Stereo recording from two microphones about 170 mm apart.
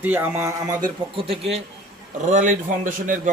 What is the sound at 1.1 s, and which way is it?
Speech, 35° right (ahead or behind).